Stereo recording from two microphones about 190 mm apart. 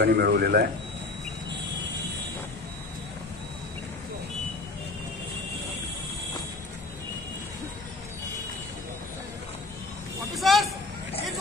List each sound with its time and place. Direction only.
0.0 s speech: 55° right (ahead or behind)
10.3 s vehicle: centre (ahead or behind)